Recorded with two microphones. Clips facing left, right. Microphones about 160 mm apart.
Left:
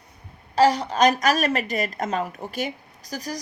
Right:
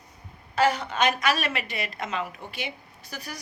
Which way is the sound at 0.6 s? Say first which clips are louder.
Left 5 dB; 35° left (ahead or behind).